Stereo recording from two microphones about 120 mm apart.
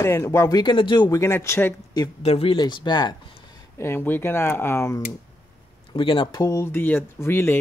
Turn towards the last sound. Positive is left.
turn(degrees=20)  # may be behind; listen again after turning